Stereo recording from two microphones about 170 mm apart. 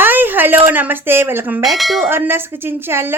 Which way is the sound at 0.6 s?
10° right (ahead or behind).